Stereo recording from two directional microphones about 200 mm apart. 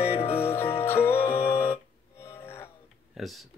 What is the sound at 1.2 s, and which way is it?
Music, 10° left (ahead or behind).